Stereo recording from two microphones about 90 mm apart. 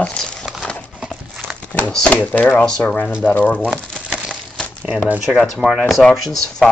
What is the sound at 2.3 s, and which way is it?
Speech, 20° left (ahead or behind).